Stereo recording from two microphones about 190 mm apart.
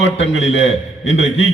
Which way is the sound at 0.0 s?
75° left (ahead or behind).